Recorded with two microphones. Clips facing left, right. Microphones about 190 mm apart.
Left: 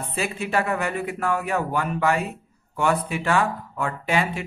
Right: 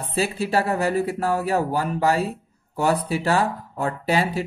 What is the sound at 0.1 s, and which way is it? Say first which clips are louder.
Speech: right 3 dB; 35° right (ahead or behind).